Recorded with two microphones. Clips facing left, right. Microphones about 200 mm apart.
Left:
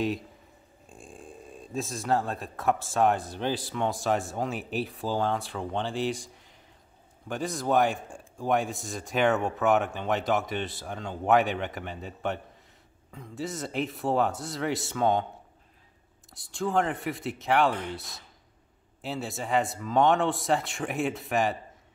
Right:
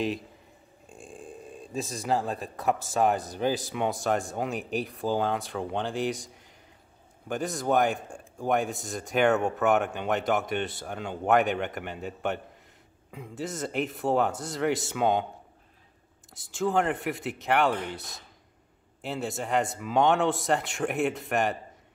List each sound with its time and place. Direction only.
0.9 s speech: centre (ahead or behind)
13.1 s speech: 5° right (ahead or behind)
16.3 s speech: centre (ahead or behind)